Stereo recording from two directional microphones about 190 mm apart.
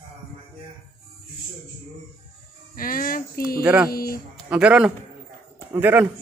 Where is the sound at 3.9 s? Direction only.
50° left (ahead or behind).